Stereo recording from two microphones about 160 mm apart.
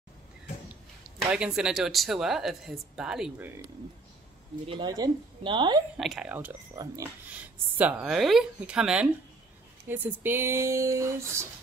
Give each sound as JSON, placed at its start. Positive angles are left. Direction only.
{"t": 1.3, "sound": "speech", "side_deg": -5}
{"t": 4.6, "sound": "speech", "side_deg": -30}
{"t": 5.9, "sound": "speech", "side_deg": -5}
{"t": 6.7, "sound": "speech", "side_deg": -25}
{"t": 7.2, "sound": "speech", "side_deg": -10}